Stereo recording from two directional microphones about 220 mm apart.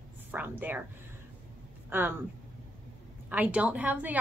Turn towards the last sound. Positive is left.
turn(degrees=-5)  # may be behind; listen again after turning